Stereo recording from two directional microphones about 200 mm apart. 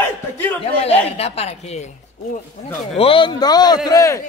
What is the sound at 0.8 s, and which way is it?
A man's voice, 30° left (ahead or behind).